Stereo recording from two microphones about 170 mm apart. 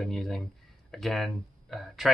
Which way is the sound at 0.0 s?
Centre (ahead or behind).